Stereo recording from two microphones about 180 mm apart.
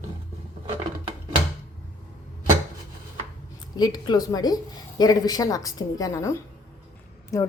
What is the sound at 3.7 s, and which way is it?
A woman's voice, 20° left (ahead or behind).